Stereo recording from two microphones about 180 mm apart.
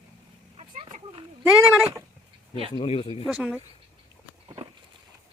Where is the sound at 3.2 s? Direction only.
5° right (ahead or behind).